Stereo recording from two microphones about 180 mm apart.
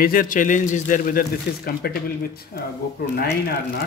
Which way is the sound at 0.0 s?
50° left (ahead or behind).